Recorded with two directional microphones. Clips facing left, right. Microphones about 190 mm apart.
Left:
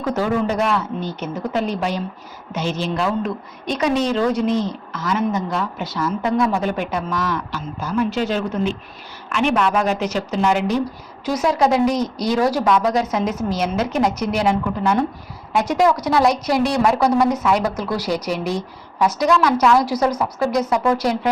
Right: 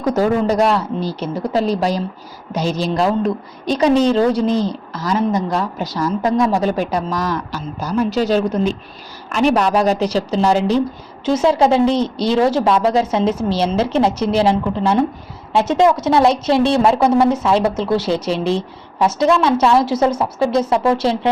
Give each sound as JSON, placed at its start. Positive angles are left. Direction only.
{"t": 0.0, "sound": "a woman's voice", "side_deg": -40}